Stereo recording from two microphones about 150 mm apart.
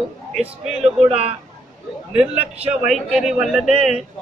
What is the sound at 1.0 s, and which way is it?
Speech, 40° right (ahead or behind).